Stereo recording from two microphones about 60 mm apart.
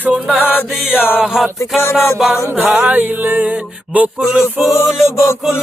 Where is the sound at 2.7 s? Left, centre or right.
Centre.